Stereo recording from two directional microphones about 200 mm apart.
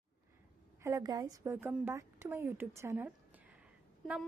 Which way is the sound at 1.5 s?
5° right (ahead or behind).